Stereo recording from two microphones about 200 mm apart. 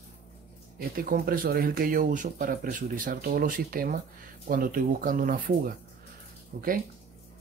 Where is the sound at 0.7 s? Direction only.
45° right (ahead or behind).